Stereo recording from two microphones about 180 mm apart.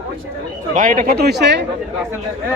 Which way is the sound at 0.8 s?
45° right (ahead or behind).